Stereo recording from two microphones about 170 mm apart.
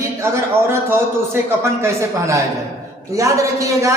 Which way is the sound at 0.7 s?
15° right (ahead or behind).